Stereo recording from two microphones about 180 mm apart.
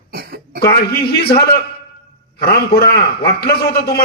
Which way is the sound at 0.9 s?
60° left (ahead or behind).